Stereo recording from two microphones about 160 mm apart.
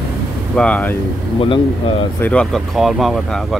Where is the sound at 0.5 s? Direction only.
5° left (ahead or behind).